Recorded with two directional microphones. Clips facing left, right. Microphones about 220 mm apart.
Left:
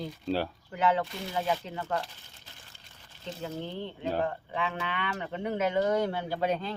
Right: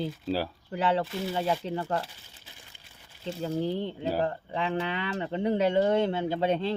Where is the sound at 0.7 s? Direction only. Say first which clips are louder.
Right 1 dB; 30° right (ahead or behind).